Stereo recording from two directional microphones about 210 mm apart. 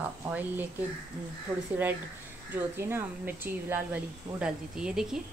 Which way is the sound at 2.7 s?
10° right (ahead or behind).